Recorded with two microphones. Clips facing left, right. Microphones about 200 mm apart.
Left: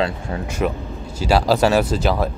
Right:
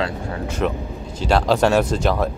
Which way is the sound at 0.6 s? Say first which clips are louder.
Left 1 dB; 10° left (ahead or behind).